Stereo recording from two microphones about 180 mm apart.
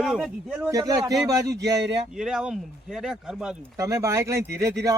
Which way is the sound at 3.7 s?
15° right (ahead or behind).